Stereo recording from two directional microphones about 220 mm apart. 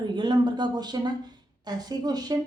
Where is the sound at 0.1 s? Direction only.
20° right (ahead or behind).